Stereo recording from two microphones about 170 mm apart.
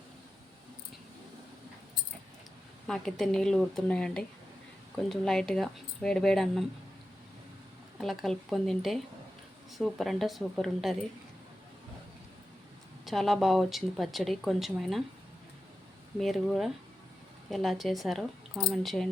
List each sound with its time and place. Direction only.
2.8 s speech: 5° left (ahead or behind)
7.9 s speech: centre (ahead or behind)
13.1 s speech: centre (ahead or behind)
16.1 s speech: centre (ahead or behind)